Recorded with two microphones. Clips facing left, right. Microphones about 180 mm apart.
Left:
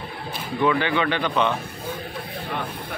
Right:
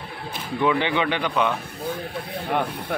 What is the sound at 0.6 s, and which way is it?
Speech, 15° right (ahead or behind).